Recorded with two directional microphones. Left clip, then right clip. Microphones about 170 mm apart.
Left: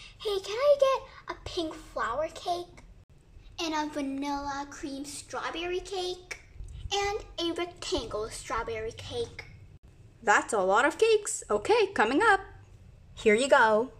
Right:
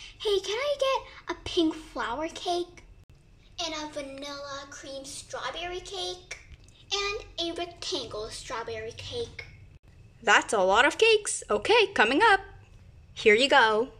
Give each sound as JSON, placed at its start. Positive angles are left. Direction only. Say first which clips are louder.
{"t": 0.4, "sound": "a child's voice", "louder": "left 4 dB", "side_deg": -65}
{"t": 3.5, "sound": "a child's voice", "louder": "left 2 dB", "side_deg": 50}
{"t": 6.9, "sound": "a child's voice", "louder": "even", "side_deg": 40}
{"t": 10.2, "sound": "speech", "louder": "right 2 dB", "side_deg": -5}